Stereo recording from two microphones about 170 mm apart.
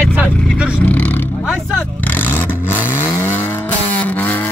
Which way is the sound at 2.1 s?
10° left (ahead or behind).